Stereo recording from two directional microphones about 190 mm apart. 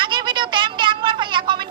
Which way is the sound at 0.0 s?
25° right (ahead or behind).